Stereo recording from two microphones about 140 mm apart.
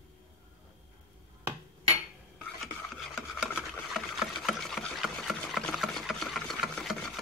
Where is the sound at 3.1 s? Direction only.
Centre (ahead or behind).